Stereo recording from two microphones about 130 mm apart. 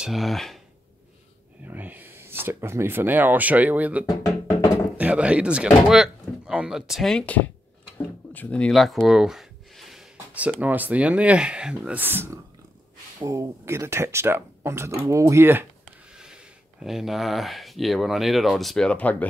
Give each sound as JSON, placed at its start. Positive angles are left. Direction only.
{"t": 0.0, "sound": "speech", "side_deg": 0}
{"t": 1.7, "sound": "speech", "side_deg": -15}
{"t": 16.1, "sound": "speech", "side_deg": -5}